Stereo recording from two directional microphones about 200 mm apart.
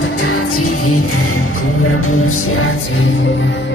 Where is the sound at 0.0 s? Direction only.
85° left.